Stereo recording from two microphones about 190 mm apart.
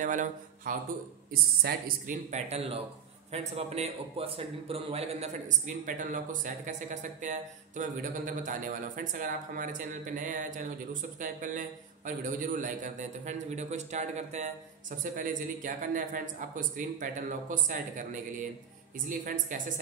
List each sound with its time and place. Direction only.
0.0 s a man's voice: 40° right (ahead or behind)
19.0 s a man's voice: 45° right (ahead or behind)